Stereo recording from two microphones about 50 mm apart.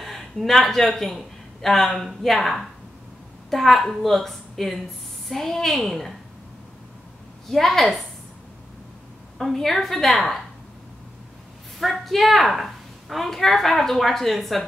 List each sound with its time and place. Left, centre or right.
0.0 s a man's voice: centre
7.4 s a woman's voice: centre
9.4 s a woman's voice: centre
11.8 s a woman's voice: centre